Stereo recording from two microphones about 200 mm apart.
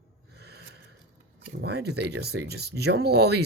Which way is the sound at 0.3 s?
55° right (ahead or behind).